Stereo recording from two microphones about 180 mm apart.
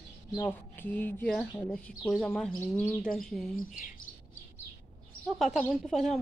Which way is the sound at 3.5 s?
45° left (ahead or behind).